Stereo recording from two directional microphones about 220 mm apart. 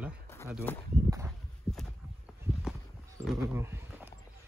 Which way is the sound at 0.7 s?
10° left (ahead or behind).